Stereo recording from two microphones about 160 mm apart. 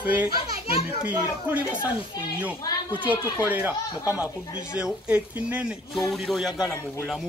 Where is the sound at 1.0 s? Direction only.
10° right (ahead or behind).